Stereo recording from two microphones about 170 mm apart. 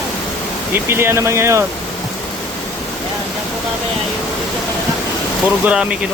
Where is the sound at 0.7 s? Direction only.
15° right (ahead or behind).